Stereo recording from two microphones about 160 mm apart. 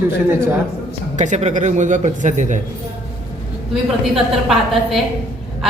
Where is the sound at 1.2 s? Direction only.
45° right (ahead or behind).